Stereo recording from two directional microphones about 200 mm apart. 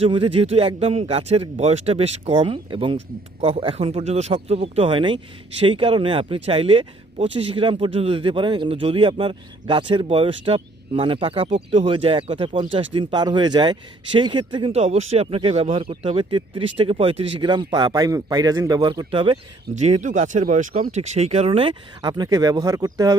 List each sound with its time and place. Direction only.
0.0 s speech: 25° right (ahead or behind)